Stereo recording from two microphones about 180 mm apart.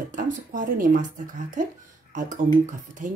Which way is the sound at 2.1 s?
45° right (ahead or behind).